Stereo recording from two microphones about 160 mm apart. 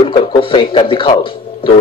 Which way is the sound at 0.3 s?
30° left (ahead or behind).